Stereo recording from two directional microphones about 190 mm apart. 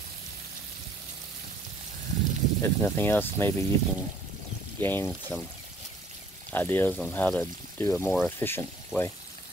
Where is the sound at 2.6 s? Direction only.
10° left (ahead or behind).